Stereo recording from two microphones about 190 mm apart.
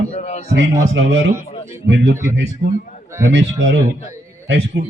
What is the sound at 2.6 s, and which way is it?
Speech, 50° right (ahead or behind).